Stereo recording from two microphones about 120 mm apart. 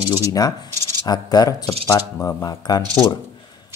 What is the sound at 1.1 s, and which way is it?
Speech, 35° left (ahead or behind).